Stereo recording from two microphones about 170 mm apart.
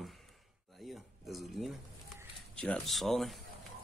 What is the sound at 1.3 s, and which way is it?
Speech, centre (ahead or behind).